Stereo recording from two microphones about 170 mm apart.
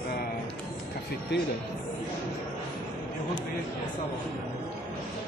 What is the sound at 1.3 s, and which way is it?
Speech, 90° left.